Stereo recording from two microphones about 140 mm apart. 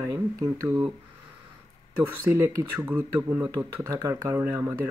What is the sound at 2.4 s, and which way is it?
Speech, 15° right (ahead or behind).